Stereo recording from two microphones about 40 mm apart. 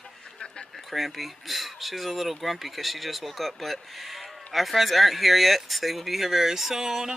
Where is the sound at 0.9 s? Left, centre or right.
Centre.